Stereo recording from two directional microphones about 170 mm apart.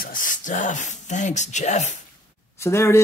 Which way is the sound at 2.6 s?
15° left (ahead or behind).